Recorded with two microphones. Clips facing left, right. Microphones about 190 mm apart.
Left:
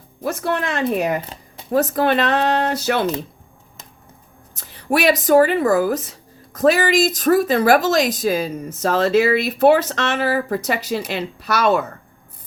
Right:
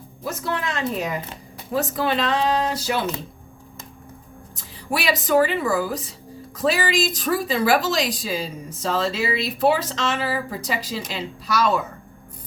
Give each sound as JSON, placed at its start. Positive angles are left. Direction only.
{"t": 0.2, "sound": "speech", "side_deg": 65}
{"t": 1.7, "sound": "speech", "side_deg": 45}
{"t": 2.0, "sound": "speech", "side_deg": 60}
{"t": 4.9, "sound": "speech", "side_deg": 50}